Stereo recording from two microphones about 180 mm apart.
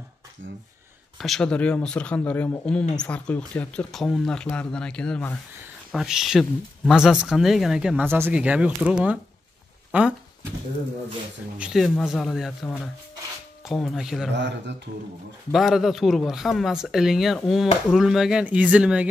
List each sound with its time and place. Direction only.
1.1 s speech: centre (ahead or behind)
11.5 s speech: 5° right (ahead or behind)
13.7 s speech: centre (ahead or behind)
14.3 s speech: 75° right (ahead or behind)
15.5 s speech: centre (ahead or behind)